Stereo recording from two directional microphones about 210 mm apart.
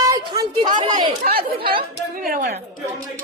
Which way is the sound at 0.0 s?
15° right (ahead or behind).